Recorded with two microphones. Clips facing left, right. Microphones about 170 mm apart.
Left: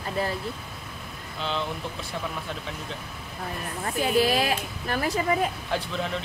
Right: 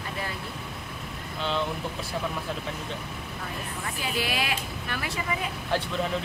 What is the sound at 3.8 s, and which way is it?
Speech, 40° left (ahead or behind).